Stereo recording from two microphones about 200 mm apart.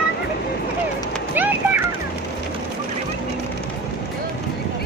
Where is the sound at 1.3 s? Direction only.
10° right (ahead or behind).